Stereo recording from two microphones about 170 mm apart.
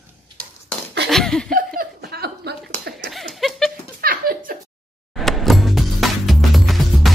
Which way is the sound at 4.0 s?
60° right (ahead or behind).